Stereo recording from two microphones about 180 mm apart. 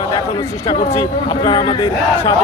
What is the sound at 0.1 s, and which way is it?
Speech, 25° left (ahead or behind).